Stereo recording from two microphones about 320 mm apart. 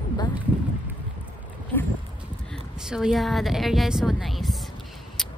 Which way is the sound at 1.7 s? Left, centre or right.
Centre.